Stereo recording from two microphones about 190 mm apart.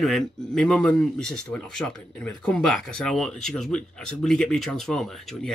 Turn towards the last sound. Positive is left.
turn(degrees=0)  # may be behind; listen again after turning